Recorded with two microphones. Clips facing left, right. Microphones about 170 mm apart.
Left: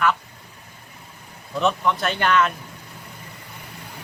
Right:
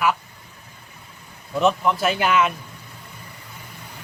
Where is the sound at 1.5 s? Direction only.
Centre (ahead or behind).